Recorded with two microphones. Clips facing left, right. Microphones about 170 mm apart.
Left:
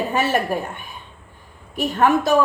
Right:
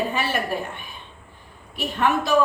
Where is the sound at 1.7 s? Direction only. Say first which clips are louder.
Left 5 dB; 45° left (ahead or behind).